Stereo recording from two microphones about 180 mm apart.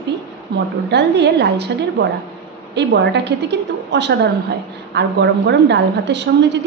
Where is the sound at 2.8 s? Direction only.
75° right (ahead or behind).